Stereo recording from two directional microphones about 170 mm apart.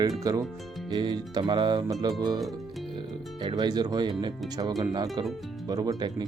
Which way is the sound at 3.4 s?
25° right (ahead or behind).